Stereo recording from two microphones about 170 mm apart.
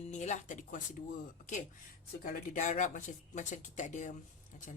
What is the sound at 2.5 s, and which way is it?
Speech, 45° left (ahead or behind).